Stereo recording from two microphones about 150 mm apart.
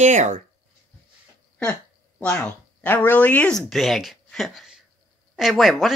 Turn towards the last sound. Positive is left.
turn(degrees=0)  # may be behind; listen again after turning